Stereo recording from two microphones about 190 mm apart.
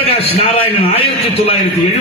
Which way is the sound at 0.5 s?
30° left (ahead or behind).